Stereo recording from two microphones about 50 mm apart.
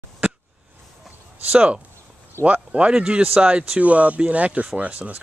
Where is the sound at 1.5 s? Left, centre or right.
Right.